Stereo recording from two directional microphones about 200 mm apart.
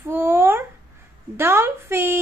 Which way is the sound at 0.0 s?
10° right (ahead or behind).